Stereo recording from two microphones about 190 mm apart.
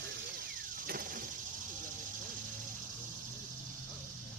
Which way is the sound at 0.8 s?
45° right (ahead or behind).